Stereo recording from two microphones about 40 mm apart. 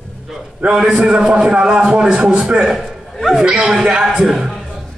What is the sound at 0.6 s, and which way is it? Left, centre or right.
A man's voice, centre.